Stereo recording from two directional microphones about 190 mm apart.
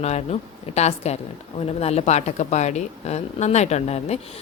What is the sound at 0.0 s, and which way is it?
A woman's voice, 35° left (ahead or behind).